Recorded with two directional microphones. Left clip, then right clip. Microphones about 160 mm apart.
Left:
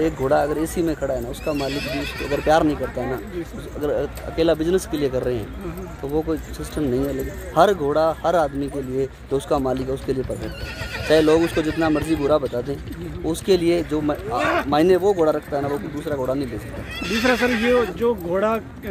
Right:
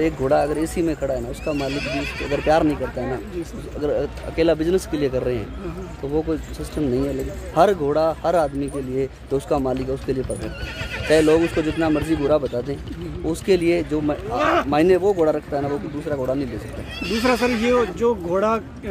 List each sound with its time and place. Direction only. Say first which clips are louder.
0.0 s speech: even; 10° right (ahead or behind)
1.4 s speech: even; 15° left (ahead or behind)
2.4 s speech: left 1 dB; centre (ahead or behind)
3.8 s speech: right 1 dB; 5° right (ahead or behind)
14.4 s speech: right 3 dB; 55° right (ahead or behind)
14.7 s speech: even; centre (ahead or behind)